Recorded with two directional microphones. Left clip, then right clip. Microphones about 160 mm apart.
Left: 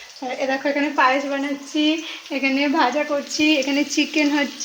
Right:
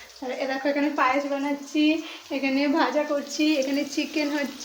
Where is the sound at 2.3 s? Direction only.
40° left (ahead or behind).